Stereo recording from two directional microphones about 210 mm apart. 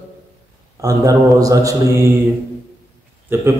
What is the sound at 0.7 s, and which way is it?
Speech, 15° right (ahead or behind).